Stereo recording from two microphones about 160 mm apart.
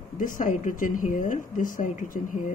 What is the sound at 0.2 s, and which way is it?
Speech, 55° left (ahead or behind).